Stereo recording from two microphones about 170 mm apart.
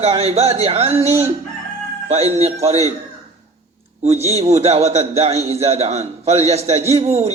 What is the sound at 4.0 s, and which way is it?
A man's voice, 40° right (ahead or behind).